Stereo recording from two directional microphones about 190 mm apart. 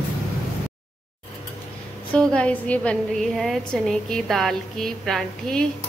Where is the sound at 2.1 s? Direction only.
5° left (ahead or behind).